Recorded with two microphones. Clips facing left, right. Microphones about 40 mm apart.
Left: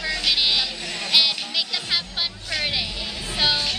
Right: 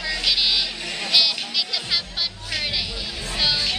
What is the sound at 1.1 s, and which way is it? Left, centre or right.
Music, centre.